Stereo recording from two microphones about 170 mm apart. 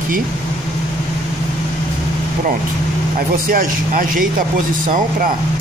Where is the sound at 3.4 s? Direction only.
55° right (ahead or behind).